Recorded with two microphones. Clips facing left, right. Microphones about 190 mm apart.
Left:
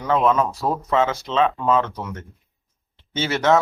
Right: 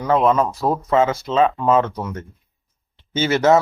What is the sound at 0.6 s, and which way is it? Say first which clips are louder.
Speech: right 5 dB; 25° right (ahead or behind).